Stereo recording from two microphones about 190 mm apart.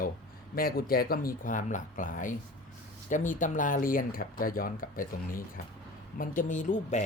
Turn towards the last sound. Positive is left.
turn(degrees=40)  # may be behind; listen again after turning